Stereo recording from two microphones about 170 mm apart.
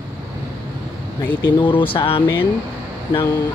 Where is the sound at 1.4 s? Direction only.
30° left (ahead or behind).